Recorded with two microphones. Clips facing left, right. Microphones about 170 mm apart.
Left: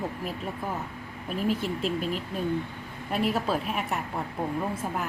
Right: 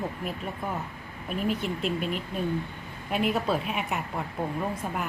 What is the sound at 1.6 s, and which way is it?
Speech, 35° left (ahead or behind).